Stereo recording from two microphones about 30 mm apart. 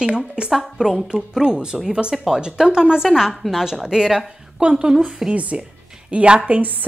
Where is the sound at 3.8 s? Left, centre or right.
Right.